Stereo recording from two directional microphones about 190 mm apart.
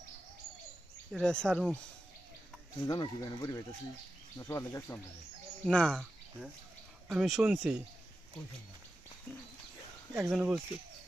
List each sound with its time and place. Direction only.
1.2 s speech: 5° left (ahead or behind)
2.8 s speech: 20° left (ahead or behind)
5.6 s speech: 5° left (ahead or behind)
10.2 s speech: 5° right (ahead or behind)